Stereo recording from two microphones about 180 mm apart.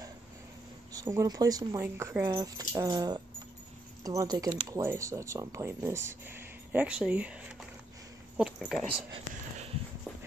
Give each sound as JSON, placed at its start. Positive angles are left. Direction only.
{"t": 0.9, "sound": "a woman's voice", "side_deg": -20}